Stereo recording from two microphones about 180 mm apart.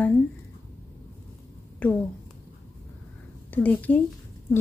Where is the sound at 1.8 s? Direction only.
10° left (ahead or behind).